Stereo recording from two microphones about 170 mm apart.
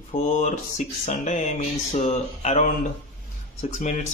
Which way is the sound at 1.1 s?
45° left (ahead or behind).